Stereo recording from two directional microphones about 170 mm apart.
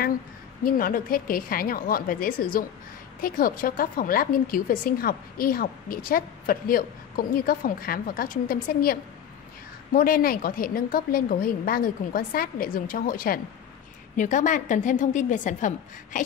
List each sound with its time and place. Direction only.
0.7 s a woman's voice: 55° left (ahead or behind)
9.9 s a woman's voice: 60° left (ahead or behind)